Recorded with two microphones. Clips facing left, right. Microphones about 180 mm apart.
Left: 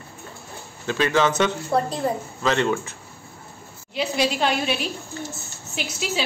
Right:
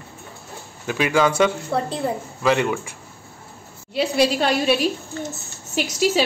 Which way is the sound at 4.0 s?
35° right (ahead or behind).